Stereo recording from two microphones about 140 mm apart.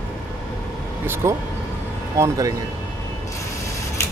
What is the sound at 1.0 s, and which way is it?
Speech, 15° right (ahead or behind).